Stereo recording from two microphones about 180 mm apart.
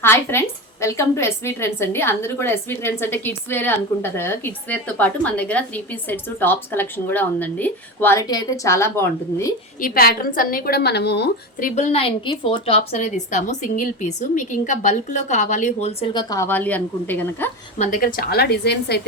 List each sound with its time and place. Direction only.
0.0 s a woman's voice: 15° left (ahead or behind)
9.8 s a woman's voice: 55° left (ahead or behind)
11.6 s a woman's voice: 40° left (ahead or behind)
16.3 s a woman's voice: 15° left (ahead or behind)
17.7 s a woman's voice: 45° left (ahead or behind); by 19.0 s 65° left (ahead or behind)